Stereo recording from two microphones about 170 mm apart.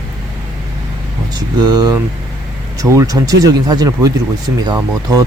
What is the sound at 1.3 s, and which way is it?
Speech, 25° right (ahead or behind).